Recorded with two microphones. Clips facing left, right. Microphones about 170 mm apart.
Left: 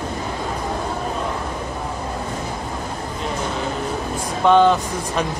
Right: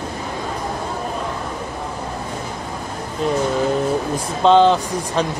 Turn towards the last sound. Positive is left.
turn(degrees=-20)  # may be behind; listen again after turning